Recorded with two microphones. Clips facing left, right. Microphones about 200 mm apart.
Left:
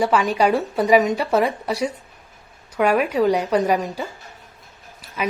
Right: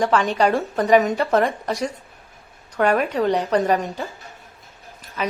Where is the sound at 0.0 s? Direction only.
10° left (ahead or behind).